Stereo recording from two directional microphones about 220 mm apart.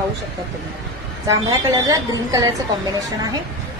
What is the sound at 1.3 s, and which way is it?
A woman's voice, 15° right (ahead or behind).